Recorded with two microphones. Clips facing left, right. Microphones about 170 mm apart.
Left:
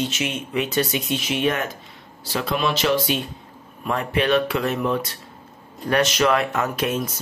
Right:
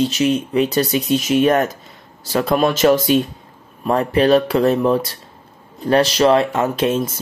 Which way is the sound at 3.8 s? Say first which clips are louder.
Right 7 dB; 35° right (ahead or behind).